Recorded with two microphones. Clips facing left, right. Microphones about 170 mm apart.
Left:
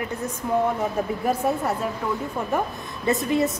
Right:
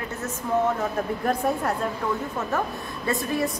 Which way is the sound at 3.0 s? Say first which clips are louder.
Left 4 dB; 20° left (ahead or behind).